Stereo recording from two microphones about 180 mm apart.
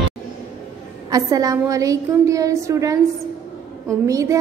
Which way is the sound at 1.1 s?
20° right (ahead or behind).